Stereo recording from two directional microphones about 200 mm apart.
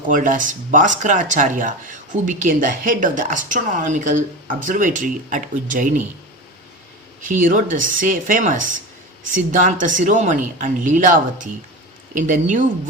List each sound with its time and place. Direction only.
0.1 s speech: 40° right (ahead or behind)
7.3 s speech: 40° right (ahead or behind)